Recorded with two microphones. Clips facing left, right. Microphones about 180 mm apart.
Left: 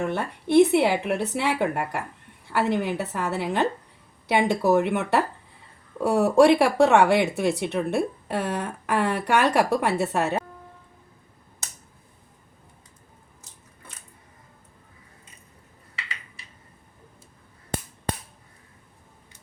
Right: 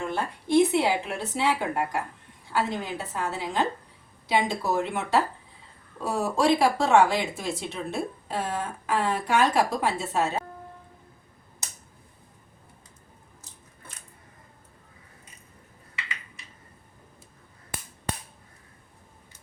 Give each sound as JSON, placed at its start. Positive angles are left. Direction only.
{"t": 0.0, "sound": "speech", "side_deg": 65}